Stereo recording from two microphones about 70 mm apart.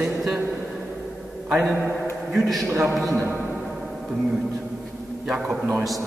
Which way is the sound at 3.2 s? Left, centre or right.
Right.